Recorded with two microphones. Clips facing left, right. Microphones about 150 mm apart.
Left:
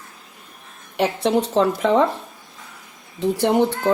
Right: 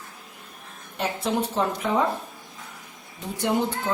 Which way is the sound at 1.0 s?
80° left.